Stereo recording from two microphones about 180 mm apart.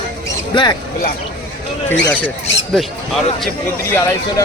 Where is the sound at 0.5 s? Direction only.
25° left (ahead or behind).